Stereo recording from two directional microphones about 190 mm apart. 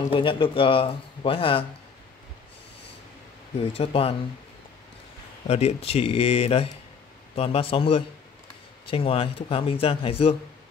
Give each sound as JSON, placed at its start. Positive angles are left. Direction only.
{"t": 0.1, "sound": "speech", "side_deg": 25}
{"t": 3.7, "sound": "speech", "side_deg": 30}
{"t": 5.5, "sound": "speech", "side_deg": 35}